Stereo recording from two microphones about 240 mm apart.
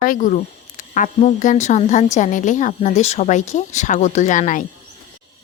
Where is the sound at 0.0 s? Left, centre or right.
Left.